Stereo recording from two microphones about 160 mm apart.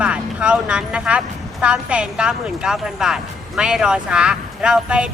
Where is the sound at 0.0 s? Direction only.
5° right (ahead or behind).